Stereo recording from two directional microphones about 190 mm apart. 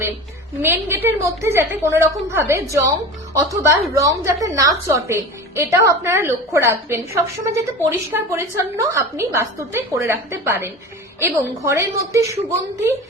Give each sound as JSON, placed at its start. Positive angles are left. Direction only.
{"t": 0.6, "sound": "a woman's voice", "side_deg": -10}